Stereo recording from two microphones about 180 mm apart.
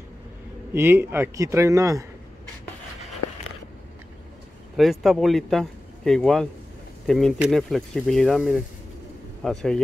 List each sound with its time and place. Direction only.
0.7 s a man's voice: 15° right (ahead or behind)
4.7 s speech: centre (ahead or behind)